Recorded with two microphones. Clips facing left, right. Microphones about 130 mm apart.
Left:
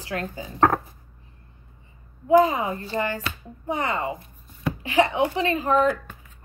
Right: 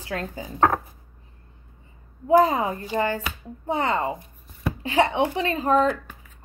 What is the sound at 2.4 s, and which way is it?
Speech, 35° right (ahead or behind).